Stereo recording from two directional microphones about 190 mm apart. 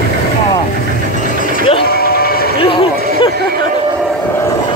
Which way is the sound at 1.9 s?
55° left (ahead or behind).